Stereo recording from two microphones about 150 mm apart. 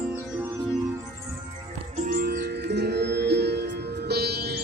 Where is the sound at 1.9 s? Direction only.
65° right (ahead or behind).